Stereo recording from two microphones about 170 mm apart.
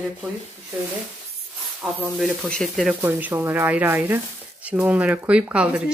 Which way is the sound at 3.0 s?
10° right (ahead or behind).